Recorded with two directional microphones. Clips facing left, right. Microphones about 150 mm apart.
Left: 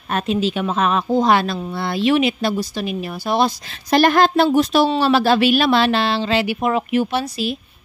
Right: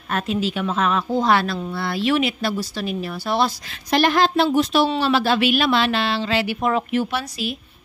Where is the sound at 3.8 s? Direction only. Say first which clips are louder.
Left 4 dB; 45° left (ahead or behind); by 6.4 s 25° left (ahead or behind).